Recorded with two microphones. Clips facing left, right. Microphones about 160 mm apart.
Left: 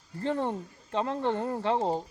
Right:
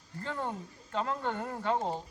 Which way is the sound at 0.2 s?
25° left (ahead or behind).